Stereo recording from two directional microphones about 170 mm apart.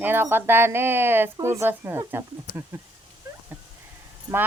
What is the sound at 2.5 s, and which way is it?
Speech, 60° left (ahead or behind).